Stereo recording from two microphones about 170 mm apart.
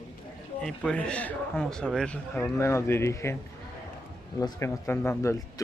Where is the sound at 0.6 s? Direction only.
5° left (ahead or behind).